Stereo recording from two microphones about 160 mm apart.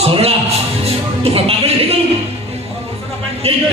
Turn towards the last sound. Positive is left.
turn(degrees=-40)  # may be behind; listen again after turning